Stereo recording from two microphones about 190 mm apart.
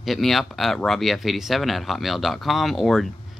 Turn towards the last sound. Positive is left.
turn(degrees=0)  # may be behind; listen again after turning